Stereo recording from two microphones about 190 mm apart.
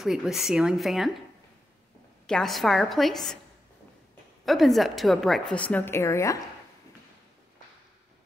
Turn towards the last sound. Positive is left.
turn(degrees=15)  # may be behind; listen again after turning